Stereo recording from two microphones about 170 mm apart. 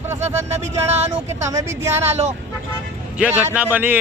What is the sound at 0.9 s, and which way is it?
Speech, 40° right (ahead or behind).